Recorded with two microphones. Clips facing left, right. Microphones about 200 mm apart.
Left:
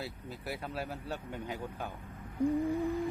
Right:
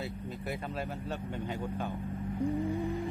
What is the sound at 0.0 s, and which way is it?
Speech, centre (ahead or behind).